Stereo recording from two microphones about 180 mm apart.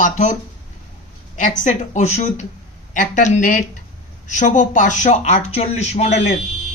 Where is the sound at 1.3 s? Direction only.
45° left (ahead or behind).